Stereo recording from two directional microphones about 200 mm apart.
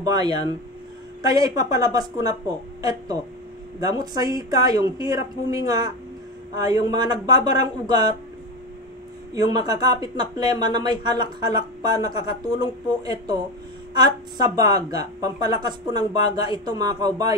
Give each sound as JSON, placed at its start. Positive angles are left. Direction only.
{"t": 0.0, "sound": "speech", "side_deg": -20}
{"t": 9.3, "sound": "speech", "side_deg": -20}